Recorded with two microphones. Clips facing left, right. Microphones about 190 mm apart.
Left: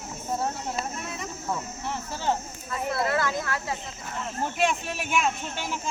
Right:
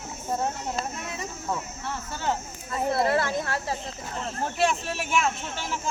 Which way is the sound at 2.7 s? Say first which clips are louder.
Right 3 dB; 25° right (ahead or behind).